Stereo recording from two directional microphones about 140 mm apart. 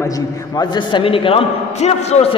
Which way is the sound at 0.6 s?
35° left (ahead or behind).